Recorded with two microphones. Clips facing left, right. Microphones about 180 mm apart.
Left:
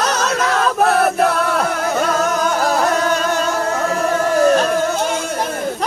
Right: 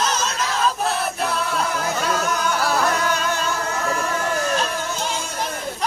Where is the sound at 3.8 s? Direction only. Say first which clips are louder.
Left 6 dB; 40° left (ahead or behind).